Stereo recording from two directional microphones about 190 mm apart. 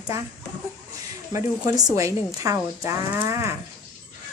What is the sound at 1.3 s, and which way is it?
A woman's voice, 15° right (ahead or behind).